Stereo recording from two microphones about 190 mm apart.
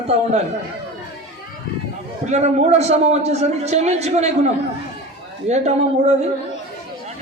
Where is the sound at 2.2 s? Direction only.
35° right (ahead or behind).